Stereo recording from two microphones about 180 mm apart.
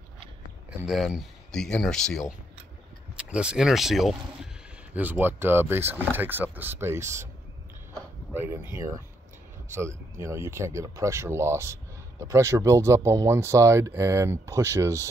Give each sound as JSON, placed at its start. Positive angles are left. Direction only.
{"t": 0.7, "sound": "speech", "side_deg": 0}
{"t": 8.3, "sound": "speech", "side_deg": -15}